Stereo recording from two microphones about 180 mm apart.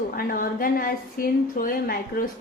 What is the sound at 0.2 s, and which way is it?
A woman's voice, 55° left (ahead or behind).